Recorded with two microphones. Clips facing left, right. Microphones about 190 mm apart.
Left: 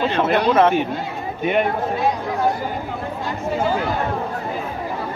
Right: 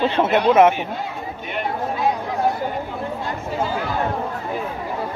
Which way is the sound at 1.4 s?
60° left (ahead or behind).